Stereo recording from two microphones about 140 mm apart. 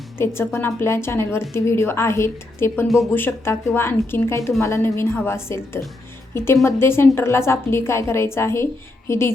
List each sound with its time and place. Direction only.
0.2 s a woman's voice: 15° left (ahead or behind)
2.8 s speech: centre (ahead or behind)
3.2 s a woman's voice: 15° left (ahead or behind)